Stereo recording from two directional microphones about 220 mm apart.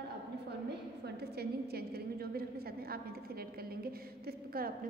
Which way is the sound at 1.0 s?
45° right (ahead or behind).